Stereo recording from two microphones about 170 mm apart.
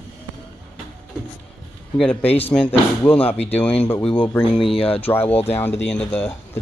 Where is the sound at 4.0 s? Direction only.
30° left (ahead or behind).